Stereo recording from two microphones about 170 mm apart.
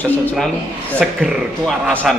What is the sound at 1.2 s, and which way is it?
Speech, centre (ahead or behind).